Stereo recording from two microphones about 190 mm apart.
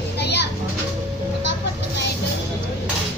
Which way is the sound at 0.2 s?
65° left (ahead or behind).